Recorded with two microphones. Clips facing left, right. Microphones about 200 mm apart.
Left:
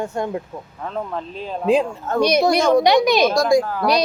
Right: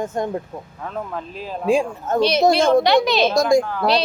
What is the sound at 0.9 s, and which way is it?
Speech, 5° right (ahead or behind).